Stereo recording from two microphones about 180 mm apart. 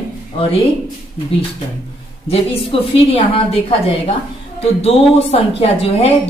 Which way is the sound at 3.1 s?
35° left (ahead or behind).